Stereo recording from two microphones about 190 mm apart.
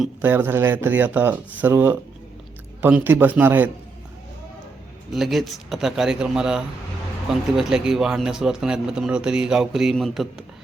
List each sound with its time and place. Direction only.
0.0 s speech: 10° right (ahead or behind)
5.1 s a man's voice: centre (ahead or behind)